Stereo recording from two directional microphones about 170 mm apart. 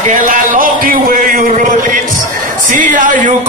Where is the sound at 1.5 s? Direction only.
50° right (ahead or behind).